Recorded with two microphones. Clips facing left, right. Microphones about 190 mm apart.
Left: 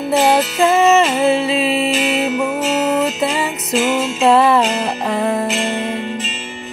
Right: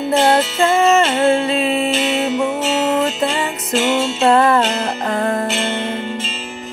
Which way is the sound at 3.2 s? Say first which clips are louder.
Left 1 dB; 5° left (ahead or behind).